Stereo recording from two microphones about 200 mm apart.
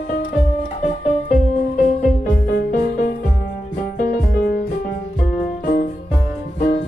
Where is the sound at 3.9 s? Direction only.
50° left (ahead or behind).